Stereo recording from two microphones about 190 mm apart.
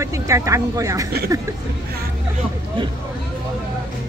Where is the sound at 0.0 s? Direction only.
15° right (ahead or behind).